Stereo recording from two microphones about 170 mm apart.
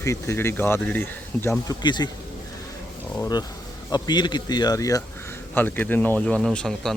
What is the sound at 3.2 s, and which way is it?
Speech, 25° left (ahead or behind).